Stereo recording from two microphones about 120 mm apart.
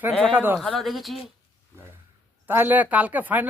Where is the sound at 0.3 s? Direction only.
15° right (ahead or behind).